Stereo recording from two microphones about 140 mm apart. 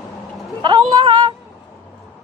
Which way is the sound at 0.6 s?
35° right (ahead or behind).